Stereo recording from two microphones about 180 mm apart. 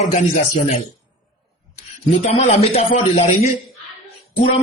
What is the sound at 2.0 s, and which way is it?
A man's voice, 35° left (ahead or behind).